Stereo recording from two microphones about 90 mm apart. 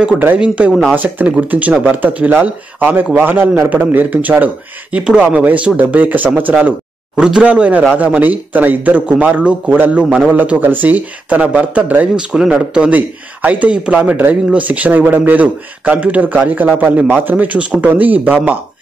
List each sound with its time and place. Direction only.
0.4 s speech: 10° right (ahead or behind)
0.9 s speech: 20° right (ahead or behind)
7.2 s speech: 10° right (ahead or behind)